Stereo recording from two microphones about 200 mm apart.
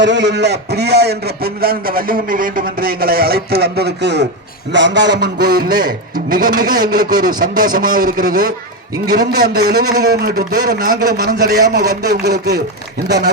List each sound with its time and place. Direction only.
0.0 s a man's voice: 60° right (ahead or behind)